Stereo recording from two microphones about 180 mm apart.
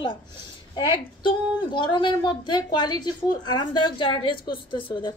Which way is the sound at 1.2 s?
25° left (ahead or behind).